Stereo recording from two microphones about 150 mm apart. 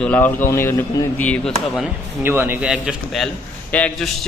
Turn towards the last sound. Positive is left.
turn(degrees=5)  # may be behind; listen again after turning